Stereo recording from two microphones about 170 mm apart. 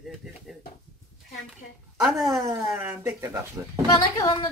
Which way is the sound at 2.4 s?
15° right (ahead or behind).